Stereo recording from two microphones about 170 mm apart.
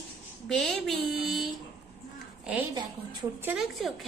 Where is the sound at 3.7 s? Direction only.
Centre (ahead or behind).